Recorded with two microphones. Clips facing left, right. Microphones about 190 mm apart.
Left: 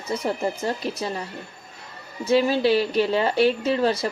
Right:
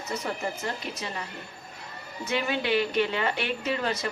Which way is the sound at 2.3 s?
35° left (ahead or behind).